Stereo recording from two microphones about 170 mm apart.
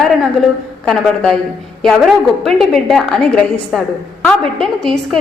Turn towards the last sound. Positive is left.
turn(degrees=5)  # may be behind; listen again after turning